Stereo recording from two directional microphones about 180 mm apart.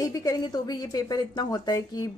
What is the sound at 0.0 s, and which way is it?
A woman's voice, 20° left (ahead or behind).